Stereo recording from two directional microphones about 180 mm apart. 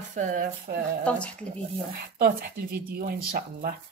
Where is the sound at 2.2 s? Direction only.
55° right (ahead or behind).